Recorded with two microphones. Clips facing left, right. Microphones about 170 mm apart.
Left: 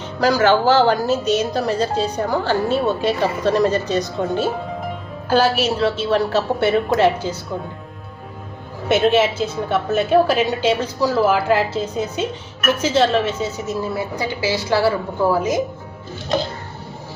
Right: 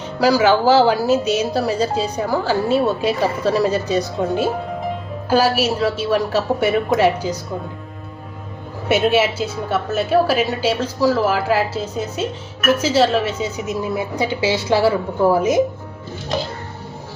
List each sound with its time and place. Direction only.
0.2 s a woman's voice: 10° right (ahead or behind)
8.9 s a woman's voice: 10° right (ahead or behind)